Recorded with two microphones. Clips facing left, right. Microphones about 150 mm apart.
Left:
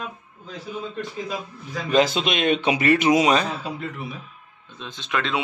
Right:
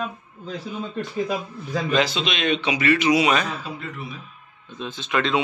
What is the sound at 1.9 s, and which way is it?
A man's voice, 45° left (ahead or behind).